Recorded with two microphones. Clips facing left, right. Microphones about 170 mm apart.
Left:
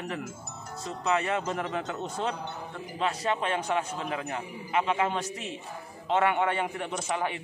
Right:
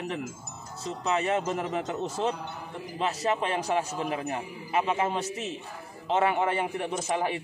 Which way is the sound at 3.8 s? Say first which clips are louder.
Right 2 dB; 30° right (ahead or behind).